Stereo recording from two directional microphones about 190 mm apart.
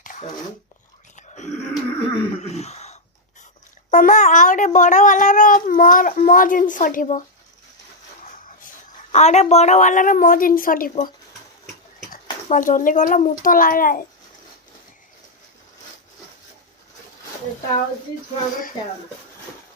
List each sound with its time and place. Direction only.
0.0 s dog: 40° left (ahead or behind)
1.1 s a sound: 40° left (ahead or behind)
2.1 s groan: 35° left (ahead or behind)
3.9 s speech: 40° left (ahead or behind)
9.1 s speech: 35° left (ahead or behind)
12.1 s a child's voice: 45° left (ahead or behind)